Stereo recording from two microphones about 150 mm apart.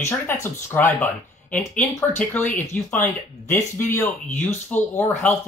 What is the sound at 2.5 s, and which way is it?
Speech, 60° left (ahead or behind).